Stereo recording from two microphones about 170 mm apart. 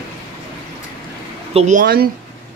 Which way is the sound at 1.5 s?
45° right (ahead or behind).